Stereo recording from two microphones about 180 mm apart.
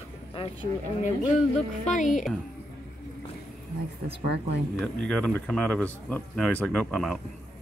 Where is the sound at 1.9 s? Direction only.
45° left (ahead or behind).